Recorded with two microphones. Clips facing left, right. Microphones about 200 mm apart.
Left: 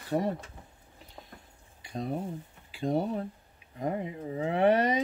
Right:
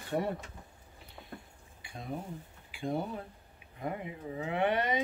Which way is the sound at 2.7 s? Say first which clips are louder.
Left 6 dB; 35° left (ahead or behind).